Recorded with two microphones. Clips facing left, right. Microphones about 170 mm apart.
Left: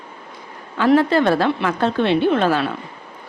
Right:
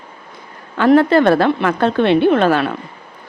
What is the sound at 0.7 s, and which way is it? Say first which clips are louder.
A woman's voice: right 4 dB; 60° right (ahead or behind).